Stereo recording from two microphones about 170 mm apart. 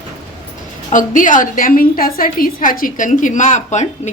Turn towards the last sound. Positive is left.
turn(degrees=45)  # may be behind; listen again after turning